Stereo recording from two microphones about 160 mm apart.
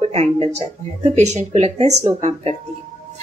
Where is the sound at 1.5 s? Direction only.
45° right (ahead or behind).